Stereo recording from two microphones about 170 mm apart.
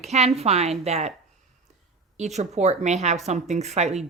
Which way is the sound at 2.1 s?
40° right (ahead or behind).